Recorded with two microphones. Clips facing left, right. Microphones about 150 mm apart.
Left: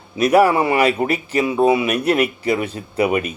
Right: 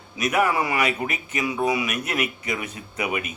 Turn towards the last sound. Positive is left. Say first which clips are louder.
# left 9 dB
turn(degrees=35)  # may be behind; listen again after turning